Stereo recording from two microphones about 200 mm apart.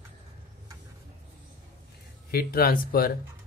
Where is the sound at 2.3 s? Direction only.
50° left (ahead or behind).